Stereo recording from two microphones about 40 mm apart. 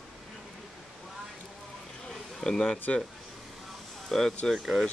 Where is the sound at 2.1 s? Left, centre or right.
Centre.